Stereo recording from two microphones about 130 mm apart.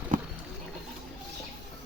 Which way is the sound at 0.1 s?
90° right.